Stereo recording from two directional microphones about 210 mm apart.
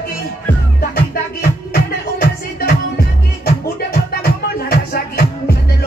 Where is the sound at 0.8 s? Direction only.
45° left (ahead or behind).